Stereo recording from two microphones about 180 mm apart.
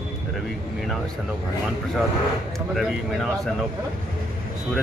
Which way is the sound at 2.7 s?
Centre (ahead or behind).